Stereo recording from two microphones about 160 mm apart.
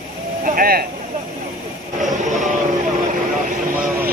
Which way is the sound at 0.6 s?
70° right (ahead or behind).